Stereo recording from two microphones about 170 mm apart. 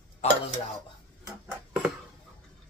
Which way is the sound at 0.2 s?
40° left (ahead or behind).